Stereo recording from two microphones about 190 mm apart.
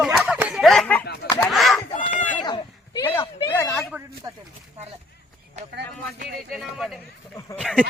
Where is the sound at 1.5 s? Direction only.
Centre (ahead or behind).